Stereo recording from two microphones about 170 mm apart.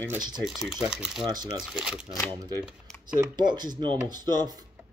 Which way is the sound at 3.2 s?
25° right (ahead or behind).